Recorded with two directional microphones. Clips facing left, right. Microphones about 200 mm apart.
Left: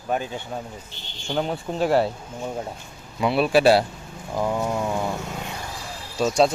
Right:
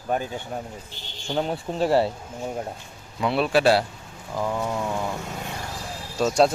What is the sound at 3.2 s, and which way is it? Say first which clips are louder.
Speech: left 2 dB; 5° left (ahead or behind).